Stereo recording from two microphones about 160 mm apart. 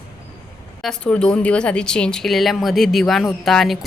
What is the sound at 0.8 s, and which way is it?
Speech, 5° left (ahead or behind).